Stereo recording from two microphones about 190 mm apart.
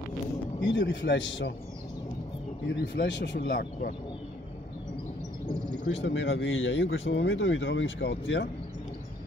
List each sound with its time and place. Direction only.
0.7 s speech: 65° left (ahead or behind)
2.7 s speech: 65° left (ahead or behind)
5.9 s speech: 85° left